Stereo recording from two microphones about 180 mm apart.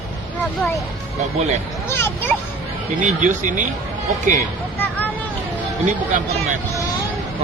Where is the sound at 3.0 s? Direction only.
45° right (ahead or behind).